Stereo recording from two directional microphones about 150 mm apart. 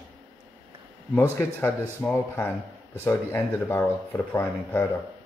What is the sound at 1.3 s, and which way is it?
Speech, 15° left (ahead or behind).